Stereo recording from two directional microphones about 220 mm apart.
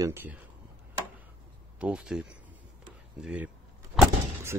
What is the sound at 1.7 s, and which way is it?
Speech, 5° right (ahead or behind).